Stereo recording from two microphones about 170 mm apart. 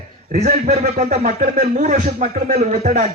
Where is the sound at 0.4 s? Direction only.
45° right (ahead or behind).